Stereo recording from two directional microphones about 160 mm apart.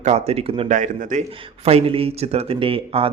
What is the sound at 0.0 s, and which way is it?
Speech, 40° right (ahead or behind).